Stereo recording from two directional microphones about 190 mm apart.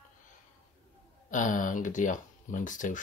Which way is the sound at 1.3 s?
45° left (ahead or behind).